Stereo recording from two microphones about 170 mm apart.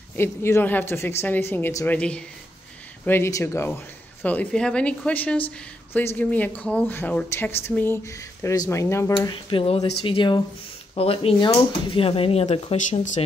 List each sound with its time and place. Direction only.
0.1 s a woman's voice: 15° left (ahead or behind)
9.3 s speech: 30° left (ahead or behind)